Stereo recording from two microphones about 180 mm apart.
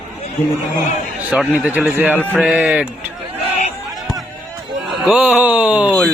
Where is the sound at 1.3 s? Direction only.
5° right (ahead or behind).